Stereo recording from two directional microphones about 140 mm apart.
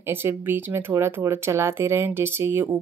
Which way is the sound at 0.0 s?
15° right (ahead or behind).